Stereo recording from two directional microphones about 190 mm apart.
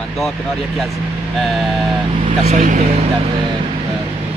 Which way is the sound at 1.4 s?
Centre (ahead or behind).